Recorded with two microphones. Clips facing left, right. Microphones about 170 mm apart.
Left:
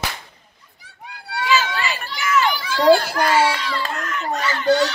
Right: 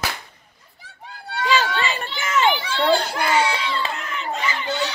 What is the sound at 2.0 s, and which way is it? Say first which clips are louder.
Children playing: left 3 dB; 25° right (ahead or behind).